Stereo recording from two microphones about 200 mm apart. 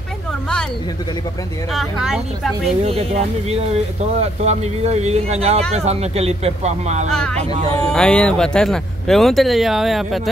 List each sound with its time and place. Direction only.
1.7 s speech: centre (ahead or behind)
2.8 s speech: 30° right (ahead or behind)
7.1 s speech: 5° left (ahead or behind)